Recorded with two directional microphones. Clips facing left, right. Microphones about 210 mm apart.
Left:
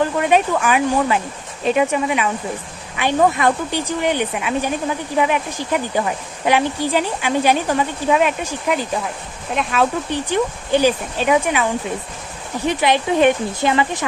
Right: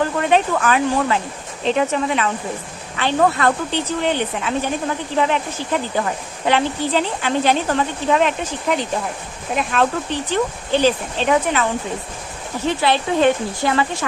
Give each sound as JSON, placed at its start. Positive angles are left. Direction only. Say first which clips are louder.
{"t": 0.2, "sound": "a woman's voice", "louder": "even", "side_deg": 10}
{"t": 10.1, "sound": "a woman's voice", "louder": "left 1 dB", "side_deg": 15}
{"t": 12.6, "sound": "a woman's voice", "louder": "left 1 dB", "side_deg": 15}